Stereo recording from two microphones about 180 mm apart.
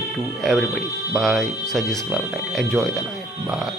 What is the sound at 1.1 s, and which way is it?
Speech, centre (ahead or behind).